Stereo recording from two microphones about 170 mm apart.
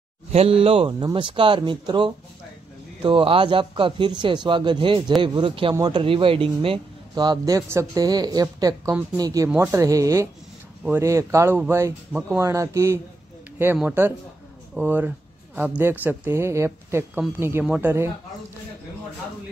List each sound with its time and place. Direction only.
0.3 s speech: 35° right (ahead or behind); by 14.1 s 10° right (ahead or behind)
14.7 s a sound: 10° right (ahead or behind)
15.8 s speech: 10° right (ahead or behind)